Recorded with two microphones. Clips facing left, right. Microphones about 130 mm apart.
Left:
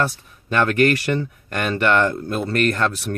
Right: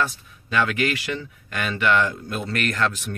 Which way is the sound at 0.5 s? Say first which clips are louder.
Left 5 dB; 50° left (ahead or behind).